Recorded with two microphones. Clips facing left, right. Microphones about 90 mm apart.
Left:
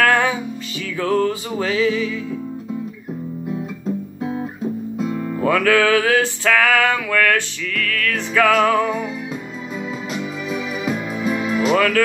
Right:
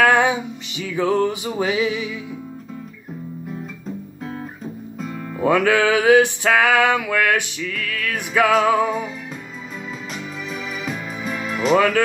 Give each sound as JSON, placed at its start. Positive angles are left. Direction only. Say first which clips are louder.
{"t": 0.0, "sound": "music", "louder": "right 1 dB", "side_deg": -15}
{"t": 3.5, "sound": "guitar", "louder": "left 6 dB", "side_deg": 10}
{"t": 4.9, "sound": "music", "louder": "left 5 dB", "side_deg": 5}
{"t": 5.4, "sound": "music", "louder": "even", "side_deg": -15}
{"t": 10.5, "sound": "music", "louder": "left 5 dB", "side_deg": 5}